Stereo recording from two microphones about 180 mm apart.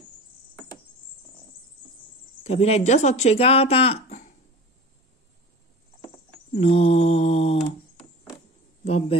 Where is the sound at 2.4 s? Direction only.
35° left (ahead or behind).